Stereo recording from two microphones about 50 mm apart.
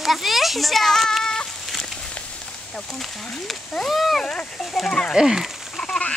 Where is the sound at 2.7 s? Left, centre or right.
Centre.